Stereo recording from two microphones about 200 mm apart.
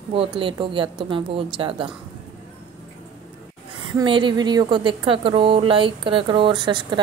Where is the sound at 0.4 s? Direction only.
25° right (ahead or behind).